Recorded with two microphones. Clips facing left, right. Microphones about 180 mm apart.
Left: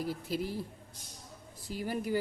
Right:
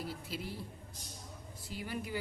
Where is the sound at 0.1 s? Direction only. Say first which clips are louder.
Left 7 dB; 45° left (ahead or behind).